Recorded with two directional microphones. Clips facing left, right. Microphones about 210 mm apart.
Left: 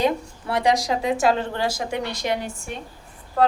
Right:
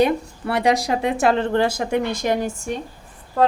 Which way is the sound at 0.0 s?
65° right (ahead or behind).